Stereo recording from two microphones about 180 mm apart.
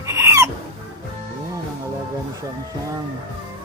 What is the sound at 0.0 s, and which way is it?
Music, 15° right (ahead or behind).